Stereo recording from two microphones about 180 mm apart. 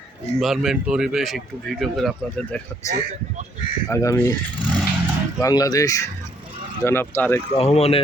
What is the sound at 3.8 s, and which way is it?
Speech, 15° left (ahead or behind).